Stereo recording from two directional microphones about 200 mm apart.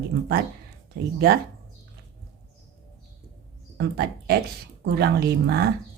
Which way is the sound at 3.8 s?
50° right (ahead or behind).